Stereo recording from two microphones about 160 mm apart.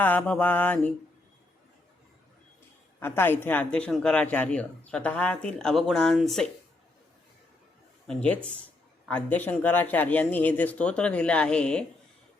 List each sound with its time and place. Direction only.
0.0 s speech: 10° left (ahead or behind)
3.0 s speech: 15° left (ahead or behind)
8.0 s speech: 5° left (ahead or behind)